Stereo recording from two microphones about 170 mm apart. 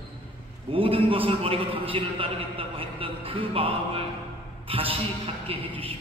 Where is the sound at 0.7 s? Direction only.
30° right (ahead or behind).